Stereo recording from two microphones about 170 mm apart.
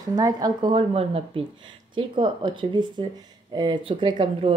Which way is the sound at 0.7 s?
35° right (ahead or behind).